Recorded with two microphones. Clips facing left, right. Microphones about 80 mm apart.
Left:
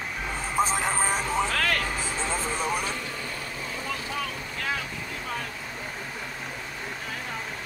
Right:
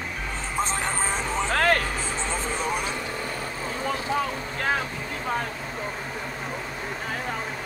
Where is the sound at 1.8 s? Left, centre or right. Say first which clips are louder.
Right 1 dB; centre.